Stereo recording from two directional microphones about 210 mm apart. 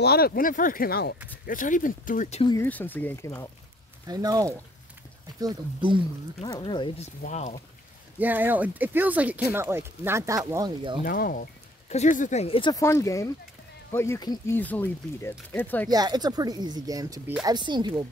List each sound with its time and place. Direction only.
0.0 s speech: 50° left (ahead or behind); by 2.5 s 30° left (ahead or behind)
2.5 s speech: 10° left (ahead or behind)
4.1 s speech: 15° right (ahead or behind)
6.4 s speech: 20° left (ahead or behind)
7.2 s speech: 35° left (ahead or behind)
8.2 s speech: 10° right (ahead or behind)
11.1 s speech: 40° left (ahead or behind); by 15.9 s 10° left (ahead or behind)
15.9 s speech: 20° right (ahead or behind)